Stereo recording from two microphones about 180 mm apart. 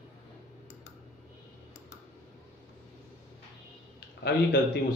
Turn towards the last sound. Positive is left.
turn(degrees=65)  # may be behind; listen again after turning